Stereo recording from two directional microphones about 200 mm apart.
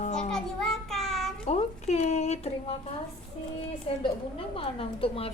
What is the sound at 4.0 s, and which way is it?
A woman's voice, 25° left (ahead or behind).